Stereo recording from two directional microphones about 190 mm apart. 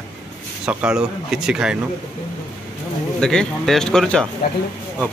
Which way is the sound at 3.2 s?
5° left (ahead or behind).